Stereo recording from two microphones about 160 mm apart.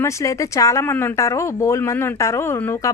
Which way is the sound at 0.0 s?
20° left (ahead or behind).